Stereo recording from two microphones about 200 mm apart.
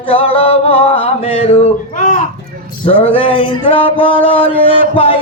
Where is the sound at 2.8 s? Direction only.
35° left (ahead or behind).